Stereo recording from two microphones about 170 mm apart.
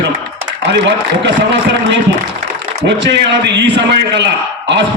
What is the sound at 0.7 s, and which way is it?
Speech, 90° right.